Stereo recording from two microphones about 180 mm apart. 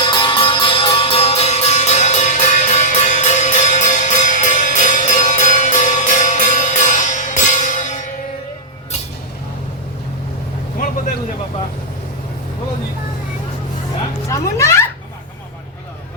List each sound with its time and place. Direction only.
0.0 s music: 25° left (ahead or behind); by 7.9 s 45° left (ahead or behind)
14.3 s music: 15° left (ahead or behind)